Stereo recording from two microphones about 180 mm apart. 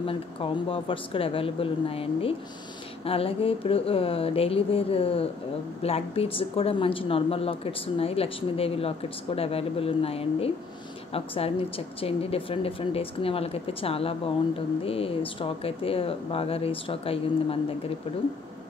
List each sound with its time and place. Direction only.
0.0 s speech: 30° left (ahead or behind)